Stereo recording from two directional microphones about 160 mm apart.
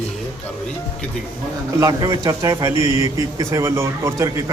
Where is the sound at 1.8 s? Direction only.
20° right (ahead or behind).